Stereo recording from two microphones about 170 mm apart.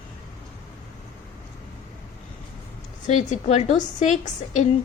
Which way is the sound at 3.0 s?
45° left (ahead or behind).